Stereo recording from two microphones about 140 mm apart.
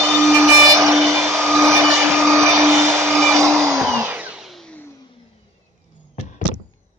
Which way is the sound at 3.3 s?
20° right (ahead or behind).